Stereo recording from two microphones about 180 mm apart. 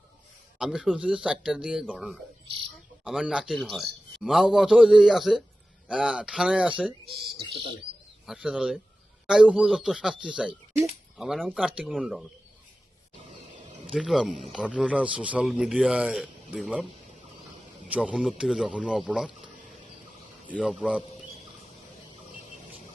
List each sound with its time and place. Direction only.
0.6 s a man's voice: 5° right (ahead or behind)
8.3 s a man's voice: 5° right (ahead or behind)
13.1 s grunt: 40° right (ahead or behind)
13.9 s a man's voice: 5° right (ahead or behind)
17.8 s a man's voice: 5° right (ahead or behind)
20.6 s a man's voice: 5° right (ahead or behind)